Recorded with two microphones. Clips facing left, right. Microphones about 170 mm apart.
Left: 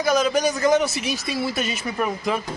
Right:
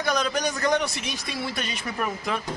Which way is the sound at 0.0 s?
5° left (ahead or behind).